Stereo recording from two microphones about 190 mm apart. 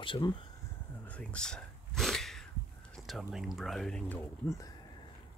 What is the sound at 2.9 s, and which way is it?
Speech, centre (ahead or behind).